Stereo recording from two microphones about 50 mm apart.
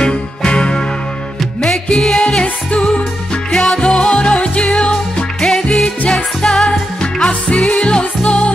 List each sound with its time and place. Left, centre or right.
0.0 s music: centre
1.9 s music: centre